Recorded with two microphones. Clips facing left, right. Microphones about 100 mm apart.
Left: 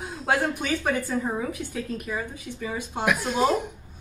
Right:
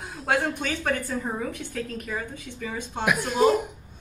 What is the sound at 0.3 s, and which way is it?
A woman's voice, 5° left (ahead or behind).